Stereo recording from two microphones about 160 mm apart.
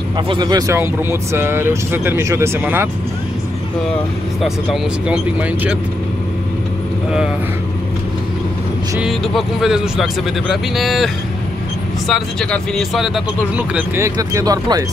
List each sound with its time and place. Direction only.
0.3 s speech: 25° right (ahead or behind)
5.0 s speech: 5° right (ahead or behind)
9.0 s speech: 5° right (ahead or behind)
12.1 s speech: 5° left (ahead or behind)
13.7 s speech: 15° right (ahead or behind)